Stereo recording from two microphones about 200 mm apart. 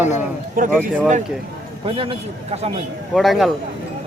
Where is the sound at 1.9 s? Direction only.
25° right (ahead or behind).